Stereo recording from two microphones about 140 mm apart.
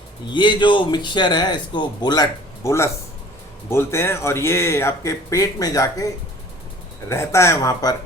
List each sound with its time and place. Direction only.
0.3 s a man's voice: 35° left (ahead or behind)
2.6 s speech: 20° left (ahead or behind)
7.1 s speech: 20° left (ahead or behind)